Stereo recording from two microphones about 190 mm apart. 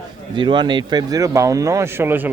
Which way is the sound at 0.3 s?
25° right (ahead or behind).